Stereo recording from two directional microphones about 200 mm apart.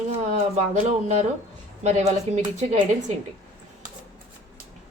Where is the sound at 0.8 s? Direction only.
35° right (ahead or behind).